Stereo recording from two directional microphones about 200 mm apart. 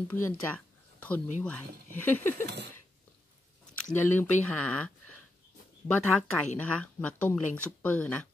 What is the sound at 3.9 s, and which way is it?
Speech, 10° left (ahead or behind).